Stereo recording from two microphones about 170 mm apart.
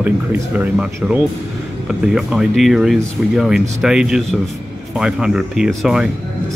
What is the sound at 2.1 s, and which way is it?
Speech, centre (ahead or behind).